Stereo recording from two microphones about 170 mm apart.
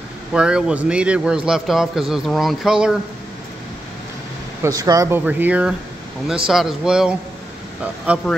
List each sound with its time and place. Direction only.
0.3 s a man's voice: 5° right (ahead or behind)
4.6 s a man's voice: 20° right (ahead or behind)